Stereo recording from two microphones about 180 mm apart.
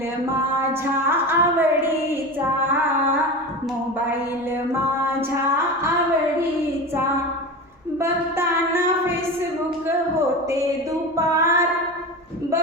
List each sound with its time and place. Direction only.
1.0 s a woman's voice: 10° right (ahead or behind)
7.9 s a woman's voice: 15° right (ahead or behind)
11.2 s child singing: 15° right (ahead or behind)